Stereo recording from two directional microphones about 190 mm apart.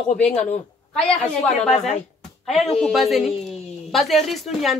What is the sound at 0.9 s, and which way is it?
Speech, 5° left (ahead or behind).